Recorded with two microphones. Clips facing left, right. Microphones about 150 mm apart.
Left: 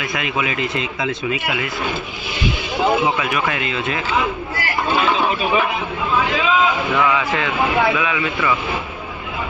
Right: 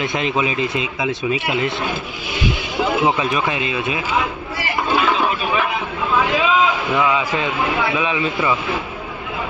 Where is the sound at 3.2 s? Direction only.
20° right (ahead or behind).